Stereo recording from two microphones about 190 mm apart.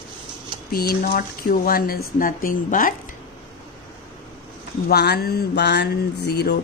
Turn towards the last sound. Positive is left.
turn(degrees=55)  # may be behind; listen again after turning